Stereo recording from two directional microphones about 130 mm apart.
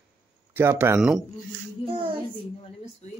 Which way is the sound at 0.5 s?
20° right (ahead or behind).